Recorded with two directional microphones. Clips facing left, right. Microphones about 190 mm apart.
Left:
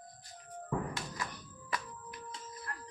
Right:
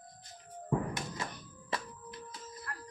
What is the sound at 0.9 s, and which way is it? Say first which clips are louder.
Music: right 2 dB; 20° right (ahead or behind).